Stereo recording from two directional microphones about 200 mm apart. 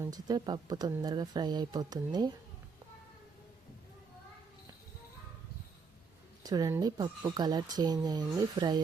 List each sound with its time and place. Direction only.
0.0 s speech: 20° right (ahead or behind)
6.4 s speech: 20° right (ahead or behind)